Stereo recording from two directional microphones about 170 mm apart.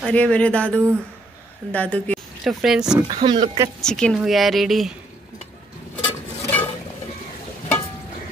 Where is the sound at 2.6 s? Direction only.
5° right (ahead or behind).